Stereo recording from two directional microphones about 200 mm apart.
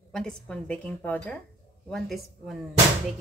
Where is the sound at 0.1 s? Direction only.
5° left (ahead or behind).